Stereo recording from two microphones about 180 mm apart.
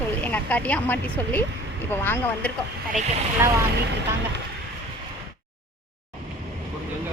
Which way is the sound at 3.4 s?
15° right (ahead or behind).